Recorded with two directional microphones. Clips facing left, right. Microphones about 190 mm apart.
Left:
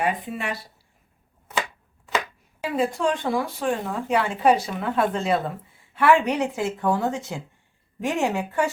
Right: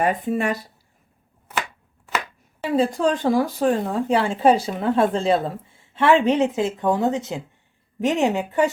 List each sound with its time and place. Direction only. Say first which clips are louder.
0.0 s speech: right 5 dB; 45° right (ahead or behind)
2.7 s speech: right 4 dB; 35° right (ahead or behind); by 8.7 s 20° right (ahead or behind)